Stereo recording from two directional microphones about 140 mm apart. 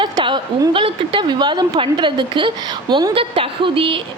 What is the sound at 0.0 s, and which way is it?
A woman's voice, 30° right (ahead or behind).